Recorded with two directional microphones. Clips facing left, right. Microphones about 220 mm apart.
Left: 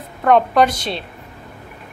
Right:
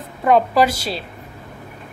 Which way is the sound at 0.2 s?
5° right (ahead or behind).